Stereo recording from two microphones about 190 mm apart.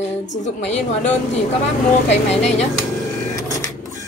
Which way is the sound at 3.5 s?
20° left (ahead or behind).